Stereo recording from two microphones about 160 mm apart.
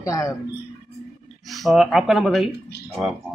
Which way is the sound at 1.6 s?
Centre (ahead or behind).